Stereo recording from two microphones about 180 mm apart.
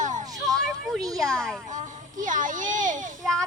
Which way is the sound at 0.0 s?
45° right (ahead or behind).